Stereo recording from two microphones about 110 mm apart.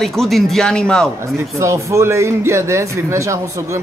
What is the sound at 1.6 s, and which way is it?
Speech, 25° right (ahead or behind).